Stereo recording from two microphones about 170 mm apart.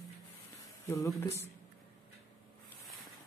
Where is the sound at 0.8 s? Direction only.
20° left (ahead or behind).